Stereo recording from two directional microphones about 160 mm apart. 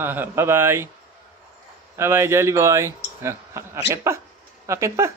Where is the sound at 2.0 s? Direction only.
15° right (ahead or behind).